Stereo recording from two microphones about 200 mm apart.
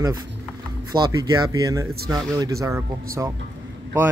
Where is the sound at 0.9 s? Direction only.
20° right (ahead or behind).